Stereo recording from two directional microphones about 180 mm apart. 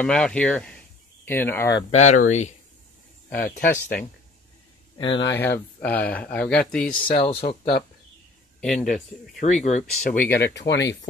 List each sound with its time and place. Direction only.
0.0 s speech: 5° left (ahead or behind)
1.9 s speech: 40° left (ahead or behind)
3.3 s speech: 55° left (ahead or behind)
3.5 s speech: 15° left (ahead or behind)
4.9 s speech: 25° left (ahead or behind)
5.3 s speech: 10° left (ahead or behind)
7.2 s speech: 30° left (ahead or behind)
8.5 s speech: 5° left (ahead or behind)
9.4 s speech: 40° left (ahead or behind)
10.2 s speech: 15° left (ahead or behind)
10.5 s speech: 75° left (ahead or behind)